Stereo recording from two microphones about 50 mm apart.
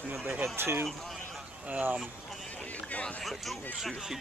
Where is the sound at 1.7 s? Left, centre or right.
Right.